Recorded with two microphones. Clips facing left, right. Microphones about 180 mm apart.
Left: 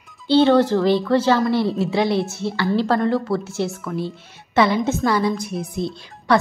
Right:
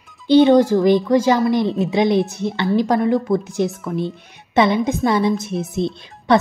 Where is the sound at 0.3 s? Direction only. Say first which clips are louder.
Right 3 dB; 15° right (ahead or behind).